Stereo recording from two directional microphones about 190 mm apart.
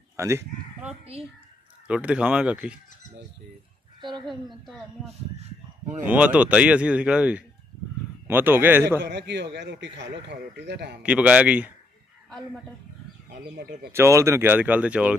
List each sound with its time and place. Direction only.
0.2 s speech: 15° right (ahead or behind)
1.9 s speech: 5° right (ahead or behind)
4.3 s a woman's voice: centre (ahead or behind)
6.0 s speech: 5° right (ahead or behind)
9.0 s speech: 65° right (ahead or behind)
11.0 s speech: 5° right (ahead or behind)
13.3 s speech: 60° right (ahead or behind)
13.9 s speech: 15° right (ahead or behind)